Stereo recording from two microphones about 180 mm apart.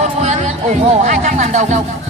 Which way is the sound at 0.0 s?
40° right (ahead or behind).